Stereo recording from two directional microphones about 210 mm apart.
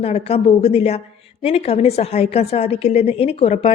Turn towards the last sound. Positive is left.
turn(degrees=30)  # may be behind; listen again after turning